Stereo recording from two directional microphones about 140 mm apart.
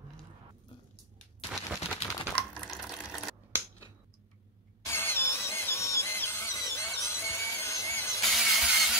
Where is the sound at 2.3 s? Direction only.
5° left (ahead or behind).